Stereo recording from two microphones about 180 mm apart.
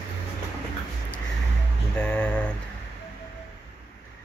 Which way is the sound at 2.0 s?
5° left (ahead or behind).